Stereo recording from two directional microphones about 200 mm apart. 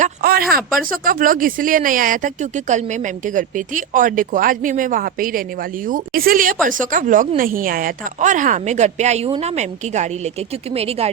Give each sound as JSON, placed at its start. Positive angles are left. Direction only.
{"t": 0.0, "sound": "a woman's voice", "side_deg": -50}